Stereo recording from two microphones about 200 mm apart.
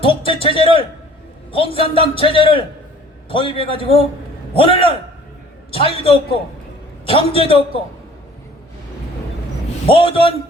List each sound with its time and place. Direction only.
0.0 s a man's voice: 25° left (ahead or behind)
9.8 s a man's voice: 30° left (ahead or behind)